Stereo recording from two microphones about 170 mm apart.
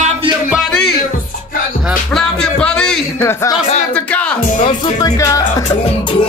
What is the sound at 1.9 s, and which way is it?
Music, 5° left (ahead or behind).